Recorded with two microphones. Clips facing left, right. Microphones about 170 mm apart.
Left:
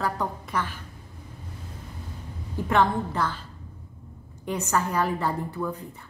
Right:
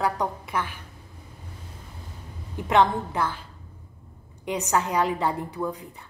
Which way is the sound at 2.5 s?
15° right (ahead or behind).